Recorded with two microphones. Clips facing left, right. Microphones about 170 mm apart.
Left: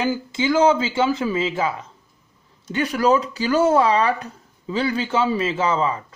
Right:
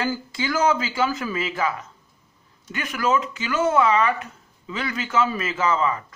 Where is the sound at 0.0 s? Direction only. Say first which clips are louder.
Left 4 dB; 20° left (ahead or behind).